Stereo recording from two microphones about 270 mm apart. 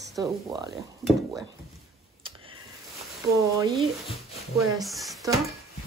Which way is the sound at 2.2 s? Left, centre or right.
Centre.